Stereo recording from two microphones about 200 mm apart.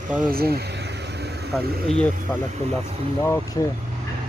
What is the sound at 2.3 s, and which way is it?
Speech, centre (ahead or behind).